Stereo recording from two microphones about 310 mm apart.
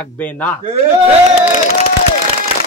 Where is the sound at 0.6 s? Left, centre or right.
Centre.